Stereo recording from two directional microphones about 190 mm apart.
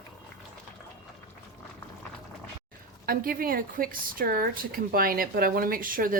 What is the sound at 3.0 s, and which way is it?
A woman's voice, 50° right (ahead or behind).